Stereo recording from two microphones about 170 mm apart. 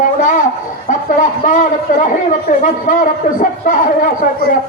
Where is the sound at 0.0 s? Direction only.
50° left (ahead or behind).